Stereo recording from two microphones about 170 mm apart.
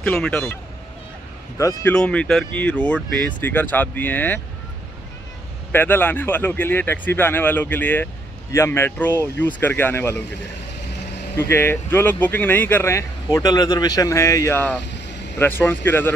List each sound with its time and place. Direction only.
0.0 s speech: 5° left (ahead or behind)
1.6 s speech: 15° left (ahead or behind)
2.0 s speech: 5° left (ahead or behind)
5.7 s speech: 15° left (ahead or behind)
11.3 s speech: 15° left (ahead or behind)